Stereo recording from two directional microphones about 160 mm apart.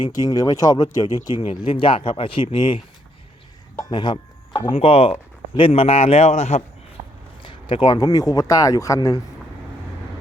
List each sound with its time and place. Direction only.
0.0 s speech: 25° left (ahead or behind); by 6.6 s 45° left (ahead or behind)
7.4 s speech: 30° left (ahead or behind)